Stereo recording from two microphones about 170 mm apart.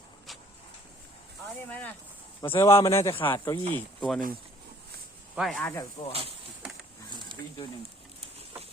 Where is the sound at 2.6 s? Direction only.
20° left (ahead or behind).